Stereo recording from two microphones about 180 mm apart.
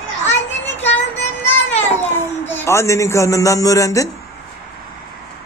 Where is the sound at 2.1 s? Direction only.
10° left (ahead or behind).